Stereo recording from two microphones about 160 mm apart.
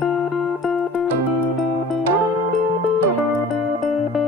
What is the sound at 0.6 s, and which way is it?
Music, centre (ahead or behind).